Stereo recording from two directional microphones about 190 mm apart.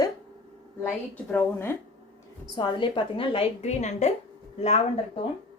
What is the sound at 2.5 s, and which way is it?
A woman's voice, 25° left (ahead or behind).